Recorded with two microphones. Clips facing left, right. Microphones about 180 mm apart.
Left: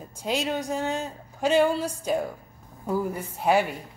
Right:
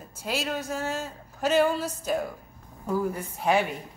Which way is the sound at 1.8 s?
10° left (ahead or behind).